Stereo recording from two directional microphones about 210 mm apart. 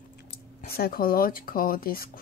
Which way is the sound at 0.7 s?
45° left (ahead or behind).